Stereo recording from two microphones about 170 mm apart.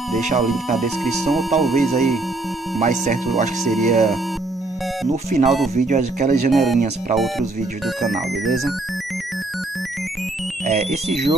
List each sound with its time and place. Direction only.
0.4 s speech: centre (ahead or behind)
2.8 s speech: 45° right (ahead or behind)
3.6 s speech: centre (ahead or behind)
5.1 s speech: 40° right (ahead or behind)
6.5 s speech: centre (ahead or behind)
10.7 s speech: 40° right (ahead or behind)